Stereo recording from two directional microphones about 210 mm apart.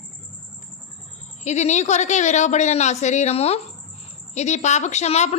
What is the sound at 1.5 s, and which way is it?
A woman's voice, 35° left (ahead or behind).